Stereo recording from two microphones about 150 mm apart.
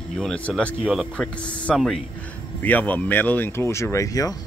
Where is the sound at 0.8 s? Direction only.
5° right (ahead or behind).